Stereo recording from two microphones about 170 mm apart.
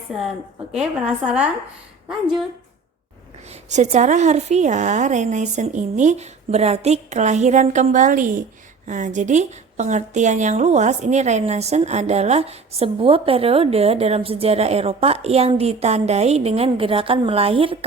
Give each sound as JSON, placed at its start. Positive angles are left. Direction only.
{"t": 0.8, "sound": "a woman's voice", "side_deg": -5}
{"t": 3.5, "sound": "a woman's voice", "side_deg": -40}